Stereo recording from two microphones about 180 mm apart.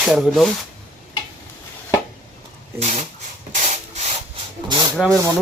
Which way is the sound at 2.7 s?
40° right (ahead or behind).